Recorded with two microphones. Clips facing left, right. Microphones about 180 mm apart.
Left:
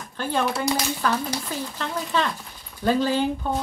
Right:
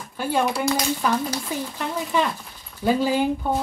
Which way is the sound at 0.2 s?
10° right (ahead or behind).